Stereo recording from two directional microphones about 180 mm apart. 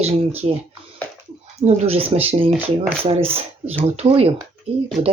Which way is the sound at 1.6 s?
35° right (ahead or behind).